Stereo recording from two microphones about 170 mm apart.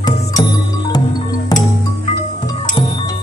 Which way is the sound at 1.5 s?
20° left (ahead or behind).